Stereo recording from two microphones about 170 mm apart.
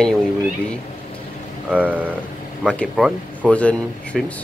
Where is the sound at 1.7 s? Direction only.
10° right (ahead or behind).